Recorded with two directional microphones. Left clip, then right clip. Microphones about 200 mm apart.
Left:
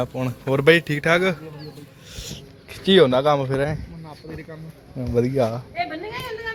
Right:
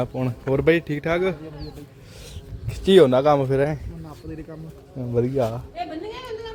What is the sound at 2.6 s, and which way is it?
Speech, 25° right (ahead or behind).